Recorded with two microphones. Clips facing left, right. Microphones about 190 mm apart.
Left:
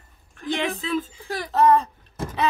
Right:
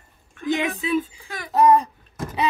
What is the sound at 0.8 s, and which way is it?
Speech, 15° right (ahead or behind).